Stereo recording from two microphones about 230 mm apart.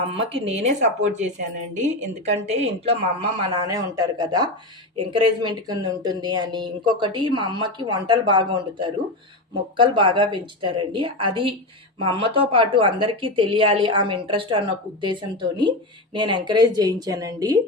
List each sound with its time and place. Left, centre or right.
0.1 s a woman's voice: right